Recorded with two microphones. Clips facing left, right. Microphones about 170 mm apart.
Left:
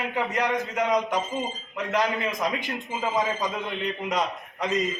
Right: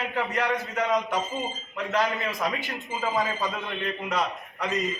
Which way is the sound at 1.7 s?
15° left (ahead or behind).